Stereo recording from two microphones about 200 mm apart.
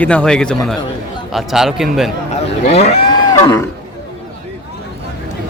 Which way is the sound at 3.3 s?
20° left (ahead or behind).